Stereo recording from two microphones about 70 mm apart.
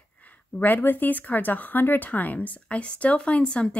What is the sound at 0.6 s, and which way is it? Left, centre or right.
Speech, left.